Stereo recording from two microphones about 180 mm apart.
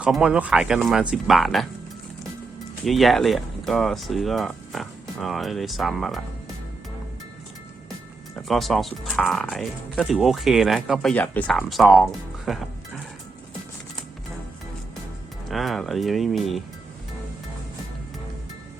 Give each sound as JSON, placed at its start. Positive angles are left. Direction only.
{"t": 0.0, "sound": "speech", "side_deg": -5}
{"t": 2.8, "sound": "speech", "side_deg": 0}
{"t": 8.4, "sound": "speech", "side_deg": 0}
{"t": 15.4, "sound": "speech", "side_deg": 0}